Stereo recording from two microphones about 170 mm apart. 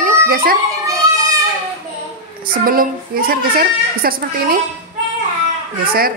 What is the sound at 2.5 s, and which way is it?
A woman's voice, 55° right (ahead or behind).